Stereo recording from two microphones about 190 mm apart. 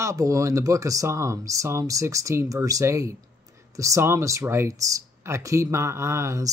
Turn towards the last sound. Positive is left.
turn(degrees=-15)  # may be behind; listen again after turning